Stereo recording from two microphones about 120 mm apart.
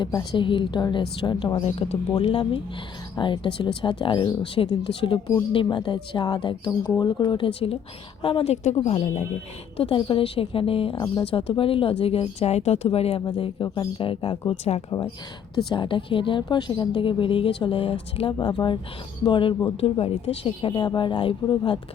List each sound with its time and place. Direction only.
0.0 s a woman's voice: 35° left (ahead or behind)
8.8 s speech: 65° left (ahead or behind)
9.7 s a woman's voice: 50° left (ahead or behind)
11.0 s a woman's voice: 35° left (ahead or behind)
11.3 s a woman's voice: 50° left (ahead or behind)
13.2 s a woman's voice: 45° left (ahead or behind)
19.8 s a woman's voice: 55° left (ahead or behind)